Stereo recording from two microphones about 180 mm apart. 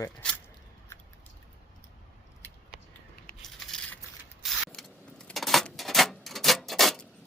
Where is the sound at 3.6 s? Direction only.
5° left (ahead or behind).